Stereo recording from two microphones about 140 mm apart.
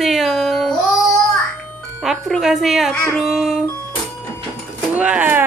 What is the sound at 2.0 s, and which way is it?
Speech, 5° right (ahead or behind).